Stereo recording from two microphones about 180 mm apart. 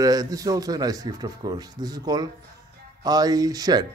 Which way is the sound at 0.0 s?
20° right (ahead or behind).